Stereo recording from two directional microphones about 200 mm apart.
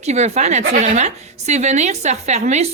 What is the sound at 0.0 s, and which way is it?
A woman's voice, 35° right (ahead or behind).